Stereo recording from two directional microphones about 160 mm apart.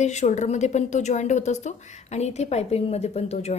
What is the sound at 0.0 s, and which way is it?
A woman's voice, 45° left (ahead or behind).